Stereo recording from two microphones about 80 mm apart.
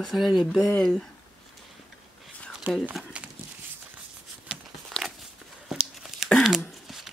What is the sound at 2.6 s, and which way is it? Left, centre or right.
Speech, centre.